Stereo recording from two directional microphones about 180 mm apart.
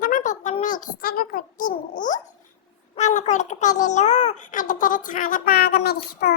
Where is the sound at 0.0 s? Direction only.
45° left (ahead or behind).